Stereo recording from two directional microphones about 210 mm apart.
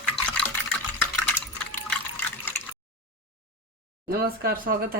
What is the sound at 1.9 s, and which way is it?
Water, 10° left (ahead or behind).